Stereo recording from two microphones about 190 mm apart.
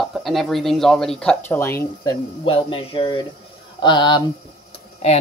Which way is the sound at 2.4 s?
30° left (ahead or behind).